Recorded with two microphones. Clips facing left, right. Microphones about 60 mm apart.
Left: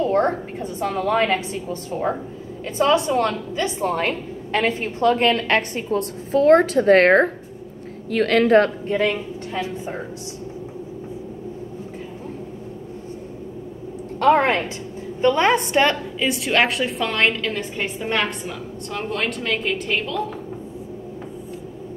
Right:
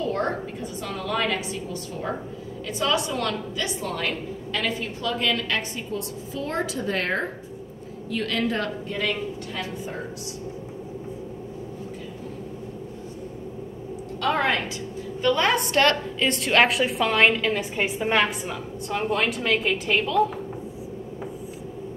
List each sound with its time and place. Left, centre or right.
0.0 s a woman's voice: left
8.8 s a woman's voice: left
14.2 s a woman's voice: left; by 16.0 s centre
16.2 s a woman's voice: centre